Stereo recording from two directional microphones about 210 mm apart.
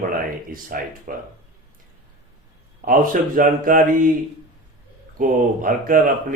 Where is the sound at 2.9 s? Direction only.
40° right (ahead or behind).